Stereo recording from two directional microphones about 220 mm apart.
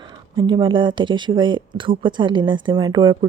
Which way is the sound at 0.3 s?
20° right (ahead or behind).